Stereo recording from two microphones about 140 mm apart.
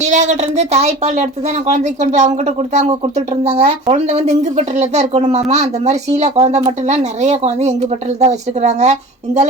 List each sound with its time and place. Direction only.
0.0 s a woman's voice: 55° right (ahead or behind)